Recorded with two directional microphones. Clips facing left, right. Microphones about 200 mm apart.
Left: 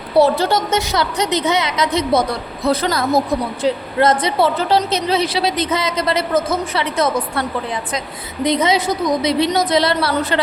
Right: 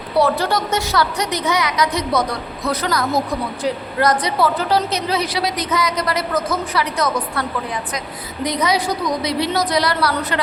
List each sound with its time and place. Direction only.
0.2 s a woman's voice: 25° left (ahead or behind)
8.4 s a woman's voice: 25° left (ahead or behind)